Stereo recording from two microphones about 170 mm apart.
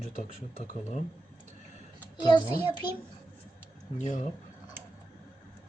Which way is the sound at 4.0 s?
45° left (ahead or behind).